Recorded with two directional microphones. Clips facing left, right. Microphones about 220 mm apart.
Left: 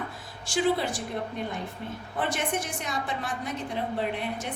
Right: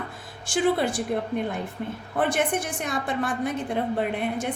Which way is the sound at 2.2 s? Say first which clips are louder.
Right 5 dB; 55° right (ahead or behind).